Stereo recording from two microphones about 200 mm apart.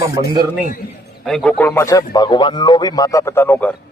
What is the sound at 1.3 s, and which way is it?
A man's voice, 5° left (ahead or behind).